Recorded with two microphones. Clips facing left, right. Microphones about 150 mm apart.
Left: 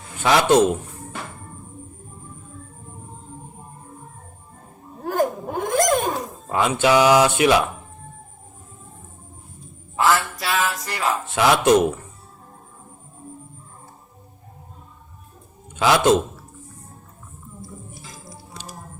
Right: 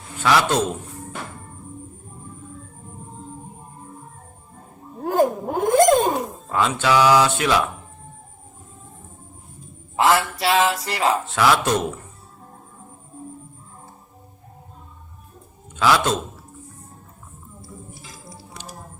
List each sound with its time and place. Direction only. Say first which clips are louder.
0.2 s speech: left 3 dB; 20° left (ahead or behind)
5.0 s a sound: right 3 dB; 10° right (ahead or behind)
6.5 s speech: left 2 dB; 15° left (ahead or behind)
9.9 s a sound: right 1 dB; 25° right (ahead or behind)
10.4 s music: right 5 dB; 25° right (ahead or behind)
11.3 s speech: left 6 dB; 20° left (ahead or behind)
15.8 s speech: left 2 dB; 20° left (ahead or behind)